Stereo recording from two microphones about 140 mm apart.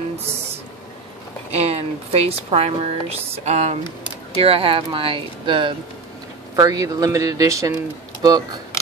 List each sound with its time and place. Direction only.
1.5 s speech: 50° right (ahead or behind)
6.5 s speech: 25° right (ahead or behind)